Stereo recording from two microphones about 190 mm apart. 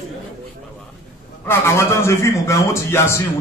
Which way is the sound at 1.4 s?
15° left (ahead or behind).